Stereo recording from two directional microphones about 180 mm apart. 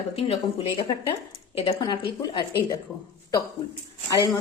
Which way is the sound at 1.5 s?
25° left (ahead or behind).